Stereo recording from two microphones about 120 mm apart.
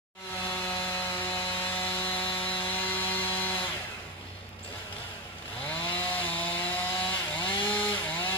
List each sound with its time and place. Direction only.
0.7 s tools: 15° left (ahead or behind)
2.6 s chainsaw: 15° left (ahead or behind)
5.7 s chainsaw: 15° left (ahead or behind)